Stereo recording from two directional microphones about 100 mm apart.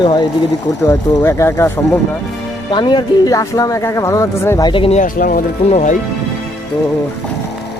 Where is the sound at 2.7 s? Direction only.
50° left (ahead or behind).